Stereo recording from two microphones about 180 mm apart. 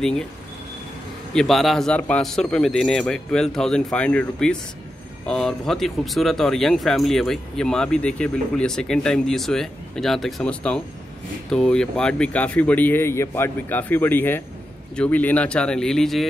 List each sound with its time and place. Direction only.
1.3 s speech: centre (ahead or behind)